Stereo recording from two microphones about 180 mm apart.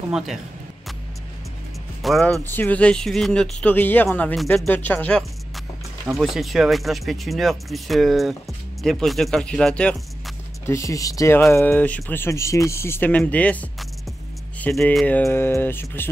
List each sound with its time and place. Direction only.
2.0 s speech: centre (ahead or behind)